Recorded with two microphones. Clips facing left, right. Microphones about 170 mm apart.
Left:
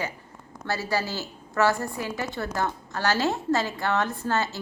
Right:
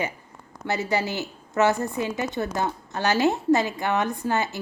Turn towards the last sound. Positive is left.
turn(degrees=-15)  # may be behind; listen again after turning